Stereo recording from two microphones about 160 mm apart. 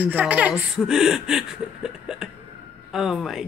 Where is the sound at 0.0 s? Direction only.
10° right (ahead or behind).